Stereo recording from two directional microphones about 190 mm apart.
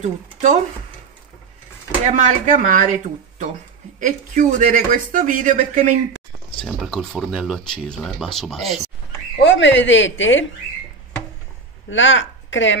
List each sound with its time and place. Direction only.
0.0 s speech: 40° right (ahead or behind)
2.0 s speech: 40° right (ahead or behind)
4.0 s speech: 45° right (ahead or behind)
6.6 s speech: centre (ahead or behind)
9.4 s speech: 70° left (ahead or behind)
11.9 s a woman's voice: 80° left